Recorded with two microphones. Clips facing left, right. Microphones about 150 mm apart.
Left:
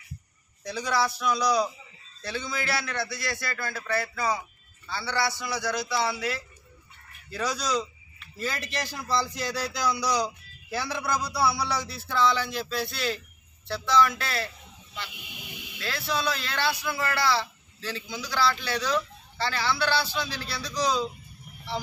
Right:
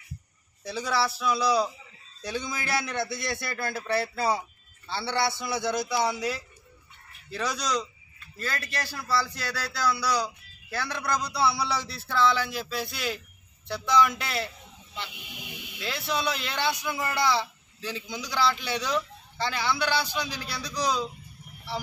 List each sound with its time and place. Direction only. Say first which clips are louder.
0.7 s a man's voice: left 1 dB; 5° right (ahead or behind)
7.2 s speech: left 1 dB; centre (ahead or behind)
8.4 s a man's voice: left 1 dB; 15° left (ahead or behind); by 14.5 s 20° right (ahead or behind)
16.1 s a man's voice: even; 20° right (ahead or behind)